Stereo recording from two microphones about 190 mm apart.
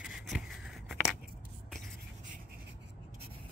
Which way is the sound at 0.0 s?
Centre (ahead or behind).